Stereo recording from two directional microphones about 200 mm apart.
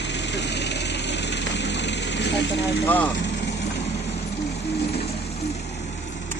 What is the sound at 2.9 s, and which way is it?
Speech, 10° left (ahead or behind).